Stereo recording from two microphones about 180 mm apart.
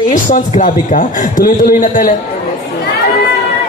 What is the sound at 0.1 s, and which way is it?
A man's voice, 45° left (ahead or behind).